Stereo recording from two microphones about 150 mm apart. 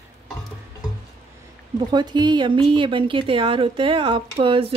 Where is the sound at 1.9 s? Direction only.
30° right (ahead or behind).